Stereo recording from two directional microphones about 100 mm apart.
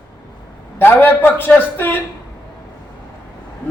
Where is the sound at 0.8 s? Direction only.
20° left (ahead or behind).